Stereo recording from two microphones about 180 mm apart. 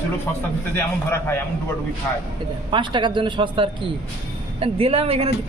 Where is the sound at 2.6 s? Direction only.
25° right (ahead or behind).